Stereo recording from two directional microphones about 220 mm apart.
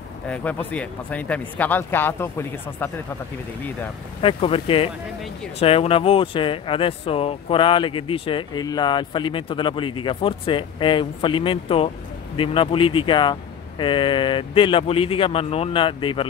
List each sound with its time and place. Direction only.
0.3 s speech: 5° left (ahead or behind)
4.2 s speech: 25° left (ahead or behind)